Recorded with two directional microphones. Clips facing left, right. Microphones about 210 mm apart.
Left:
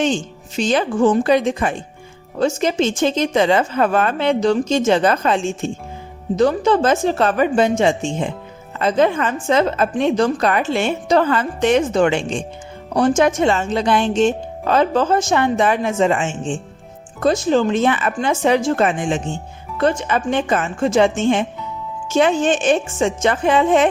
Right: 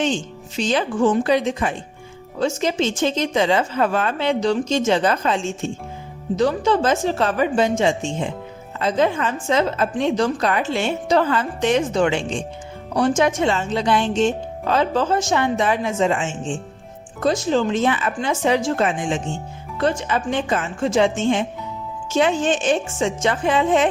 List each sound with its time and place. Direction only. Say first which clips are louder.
0.5 s a woman's voice: left 3 dB; 45° left (ahead or behind)